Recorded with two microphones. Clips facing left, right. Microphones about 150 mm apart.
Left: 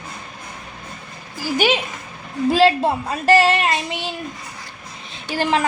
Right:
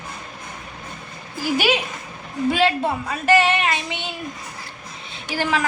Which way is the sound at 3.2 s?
35° left (ahead or behind).